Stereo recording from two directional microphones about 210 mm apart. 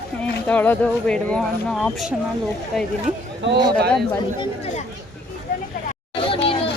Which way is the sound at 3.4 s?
60° right (ahead or behind).